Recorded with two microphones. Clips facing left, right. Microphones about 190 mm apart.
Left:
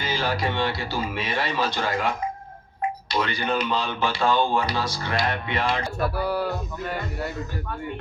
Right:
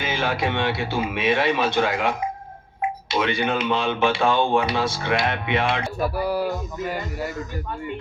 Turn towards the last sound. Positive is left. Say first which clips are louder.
# right 2 dB
turn(degrees=-5)  # may be behind; listen again after turning